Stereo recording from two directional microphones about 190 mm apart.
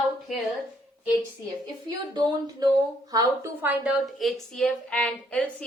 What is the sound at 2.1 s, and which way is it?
A woman's voice, 20° right (ahead or behind).